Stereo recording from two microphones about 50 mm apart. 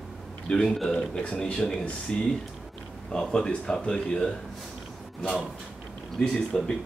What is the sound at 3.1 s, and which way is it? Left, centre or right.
Speech, centre.